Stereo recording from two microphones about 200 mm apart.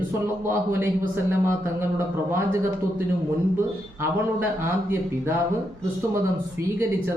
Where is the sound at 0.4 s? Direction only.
10° right (ahead or behind).